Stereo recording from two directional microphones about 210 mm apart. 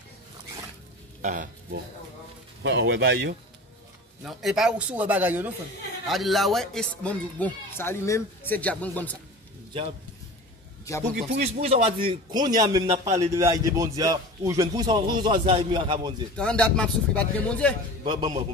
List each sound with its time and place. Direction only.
1.2 s speech: 40° right (ahead or behind)
2.6 s speech: 55° right (ahead or behind)
4.2 s speech: centre (ahead or behind)
11.1 s speech: 30° right (ahead or behind)
16.3 s speech: 5° left (ahead or behind)
18.0 s speech: 20° right (ahead or behind)